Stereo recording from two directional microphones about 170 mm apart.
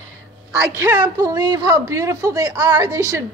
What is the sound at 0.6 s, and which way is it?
A woman's voice, 15° right (ahead or behind).